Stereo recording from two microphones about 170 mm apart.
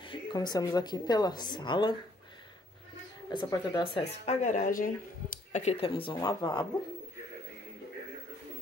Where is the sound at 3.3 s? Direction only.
25° left (ahead or behind); by 5.6 s 55° left (ahead or behind).